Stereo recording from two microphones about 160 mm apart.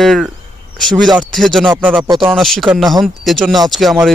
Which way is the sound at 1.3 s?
Centre (ahead or behind).